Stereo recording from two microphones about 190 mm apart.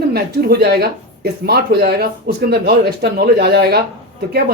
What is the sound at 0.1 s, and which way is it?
Speech, 55° right (ahead or behind).